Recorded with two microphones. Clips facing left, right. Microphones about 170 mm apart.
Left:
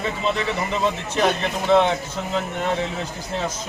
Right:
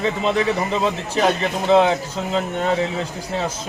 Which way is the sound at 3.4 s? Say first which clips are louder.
Right 2 dB; 30° right (ahead or behind).